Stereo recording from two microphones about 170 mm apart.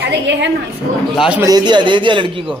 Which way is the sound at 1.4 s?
25° right (ahead or behind).